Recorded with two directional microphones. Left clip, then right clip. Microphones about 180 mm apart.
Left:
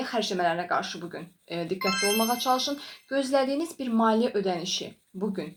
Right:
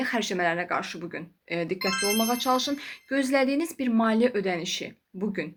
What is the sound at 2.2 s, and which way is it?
Speech, 40° right (ahead or behind).